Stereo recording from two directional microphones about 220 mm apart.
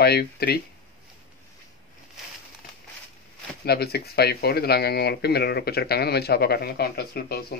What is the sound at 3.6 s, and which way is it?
Speech, 45° left (ahead or behind).